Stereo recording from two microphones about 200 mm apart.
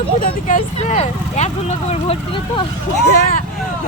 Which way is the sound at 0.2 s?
40° left (ahead or behind).